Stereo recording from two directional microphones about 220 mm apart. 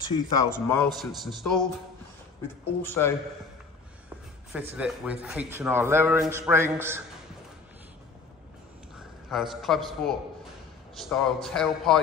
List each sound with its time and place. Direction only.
0.0 s speech: 20° left (ahead or behind)
0.9 s a man's voice: centre (ahead or behind)
2.8 s speech: 10° left (ahead or behind)
4.5 s speech: 5° right (ahead or behind)
9.3 s a man's voice: centre (ahead or behind)